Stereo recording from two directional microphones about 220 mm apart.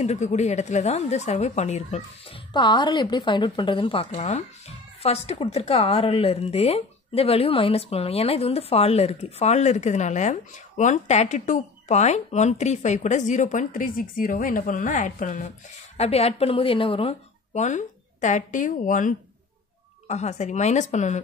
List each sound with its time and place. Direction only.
0.0 s a woman's voice: 30° left (ahead or behind)
2.5 s a woman's voice: 20° left (ahead or behind)